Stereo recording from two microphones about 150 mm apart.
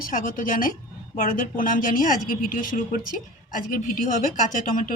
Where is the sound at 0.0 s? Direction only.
65° left (ahead or behind).